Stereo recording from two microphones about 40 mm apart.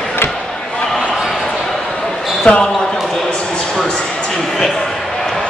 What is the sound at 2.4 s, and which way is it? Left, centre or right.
Basketball bounce, left.